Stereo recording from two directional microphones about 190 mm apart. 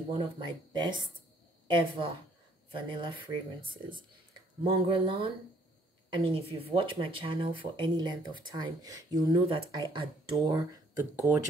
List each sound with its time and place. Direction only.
0.1 s speech: 25° right (ahead or behind)
4.6 s speech: 30° right (ahead or behind)